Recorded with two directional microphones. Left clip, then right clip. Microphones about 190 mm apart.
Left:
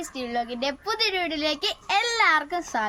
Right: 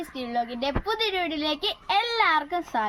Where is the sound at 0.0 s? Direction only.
10° left (ahead or behind).